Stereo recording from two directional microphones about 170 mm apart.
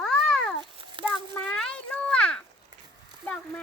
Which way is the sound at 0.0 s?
5° left (ahead or behind).